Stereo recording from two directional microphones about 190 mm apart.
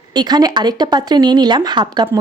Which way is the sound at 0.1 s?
20° right (ahead or behind).